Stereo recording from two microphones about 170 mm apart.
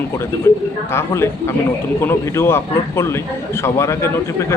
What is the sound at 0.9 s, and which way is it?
A man's voice, 15° left (ahead or behind).